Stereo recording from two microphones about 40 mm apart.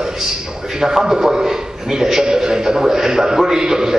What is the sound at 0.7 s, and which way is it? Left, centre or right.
A man's voice, centre.